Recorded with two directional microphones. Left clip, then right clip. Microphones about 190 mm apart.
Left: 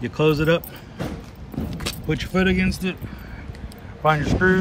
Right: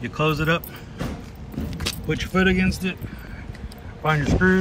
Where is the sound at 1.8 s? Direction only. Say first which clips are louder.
Right 1 dB; centre (ahead or behind).